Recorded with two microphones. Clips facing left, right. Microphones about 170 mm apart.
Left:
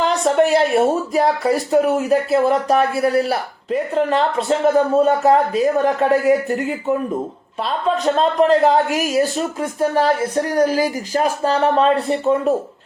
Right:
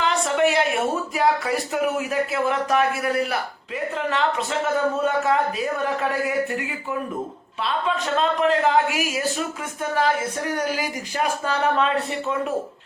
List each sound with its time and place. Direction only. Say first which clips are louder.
0.0 s speech: left 5 dB; 40° left (ahead or behind)
7.6 s speech: left 6 dB; 40° left (ahead or behind)